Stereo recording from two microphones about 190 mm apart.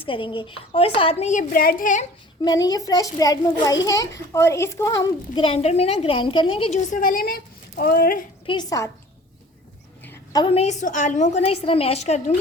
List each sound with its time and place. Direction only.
0.0 s a woman's voice: 25° left (ahead or behind); by 2.0 s 45° left (ahead or behind)
2.4 s a child's voice: 20° left (ahead or behind); by 8.2 s 50° left (ahead or behind)
8.4 s a child's voice: 20° left (ahead or behind)
10.3 s a woman's voice: 30° left (ahead or behind)